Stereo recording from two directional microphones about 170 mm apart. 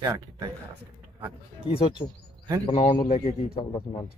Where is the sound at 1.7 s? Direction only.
30° left (ahead or behind).